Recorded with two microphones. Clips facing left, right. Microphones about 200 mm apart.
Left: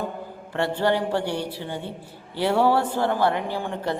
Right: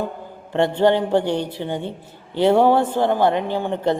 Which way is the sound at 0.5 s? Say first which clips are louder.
Right 6 dB; 20° right (ahead or behind).